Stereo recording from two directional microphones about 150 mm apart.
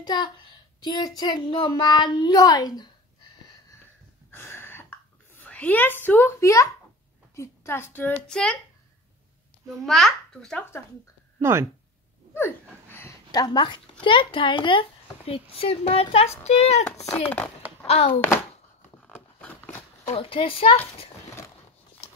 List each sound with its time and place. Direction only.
0.0 s a child's voice: 30° left (ahead or behind)
4.3 s a sound: 15° left (ahead or behind)
7.3 s a child's voice: 15° left (ahead or behind)
9.8 s a child's voice: centre (ahead or behind)
11.3 s speech: 15° right (ahead or behind)
12.4 s a sound: 15° left (ahead or behind)
13.3 s speech: 30° left (ahead or behind); by 16.8 s 45° left (ahead or behind)
17.1 s a child's voice: 10° left (ahead or behind)
17.8 s speech: 45° left (ahead or behind)
19.0 s a sound: 10° left (ahead or behind)
20.1 s speech: 40° left (ahead or behind)